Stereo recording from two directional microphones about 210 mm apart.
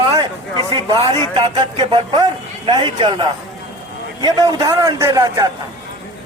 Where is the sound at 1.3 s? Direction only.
25° right (ahead or behind).